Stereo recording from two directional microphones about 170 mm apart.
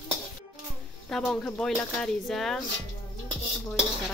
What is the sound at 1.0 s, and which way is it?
Speech, 5° left (ahead or behind).